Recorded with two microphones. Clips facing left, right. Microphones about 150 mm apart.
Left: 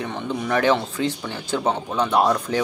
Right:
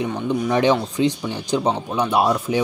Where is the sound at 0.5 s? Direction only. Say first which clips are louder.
Right 1 dB; 15° right (ahead or behind).